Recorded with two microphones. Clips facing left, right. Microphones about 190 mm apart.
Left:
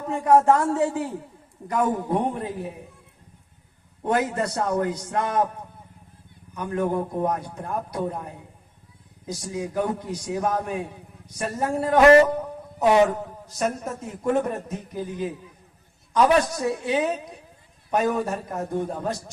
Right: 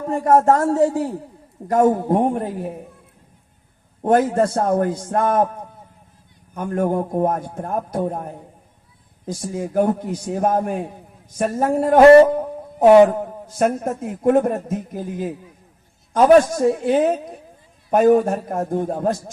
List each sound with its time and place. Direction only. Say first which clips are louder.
0.1 s a man's voice: right 2 dB; 45° right (ahead or behind)
4.0 s a man's voice: right 7 dB; 50° right (ahead or behind)
6.5 s a man's voice: right 4 dB; 50° right (ahead or behind)
12.4 s music: right 8 dB; 50° right (ahead or behind)
13.6 s a man's voice: right 7 dB; 55° right (ahead or behind)